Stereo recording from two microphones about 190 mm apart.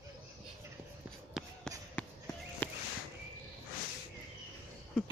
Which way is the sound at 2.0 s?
10° left (ahead or behind).